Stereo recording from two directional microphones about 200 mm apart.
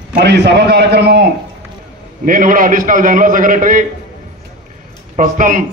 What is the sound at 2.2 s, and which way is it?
A man's voice, 45° right (ahead or behind).